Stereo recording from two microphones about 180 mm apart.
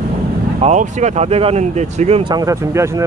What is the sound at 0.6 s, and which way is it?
Speech, 40° right (ahead or behind).